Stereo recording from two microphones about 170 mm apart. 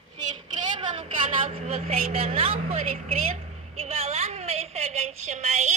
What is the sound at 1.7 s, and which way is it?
A woman's voice, 35° right (ahead or behind).